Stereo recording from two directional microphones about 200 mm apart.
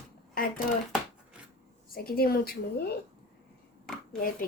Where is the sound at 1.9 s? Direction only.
50° left (ahead or behind).